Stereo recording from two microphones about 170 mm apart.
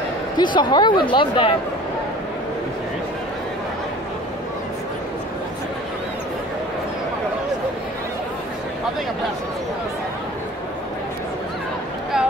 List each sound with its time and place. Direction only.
0.4 s speech: 25° left (ahead or behind)